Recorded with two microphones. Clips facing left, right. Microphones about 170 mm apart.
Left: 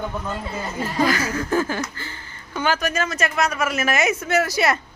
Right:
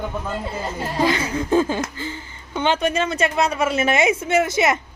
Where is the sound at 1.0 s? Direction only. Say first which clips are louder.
Right 1 dB; 25° right (ahead or behind).